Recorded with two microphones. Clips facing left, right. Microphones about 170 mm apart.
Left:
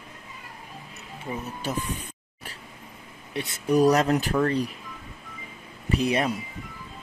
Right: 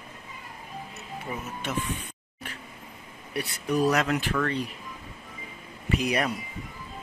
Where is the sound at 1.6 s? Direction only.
40° left (ahead or behind).